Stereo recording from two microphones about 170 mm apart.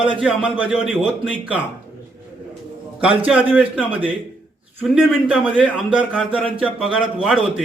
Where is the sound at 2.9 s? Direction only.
10° right (ahead or behind).